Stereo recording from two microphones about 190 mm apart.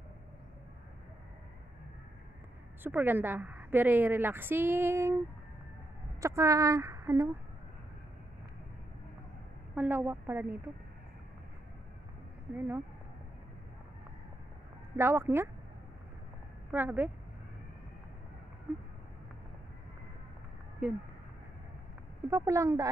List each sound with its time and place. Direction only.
2.8 s a woman's voice: 10° right (ahead or behind)
6.2 s speech: 15° right (ahead or behind)
9.8 s a woman's voice: 10° right (ahead or behind)
12.5 s a woman's voice: 10° right (ahead or behind)
15.0 s a woman's voice: 10° right (ahead or behind)
16.7 s a woman's voice: 10° right (ahead or behind)
18.7 s a woman's voice: 5° right (ahead or behind)
22.3 s a woman's voice: 15° right (ahead or behind)